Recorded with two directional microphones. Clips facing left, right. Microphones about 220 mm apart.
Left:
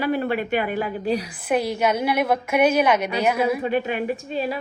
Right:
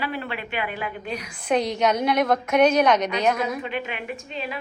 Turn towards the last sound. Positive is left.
turn(degrees=35)  # may be behind; listen again after turning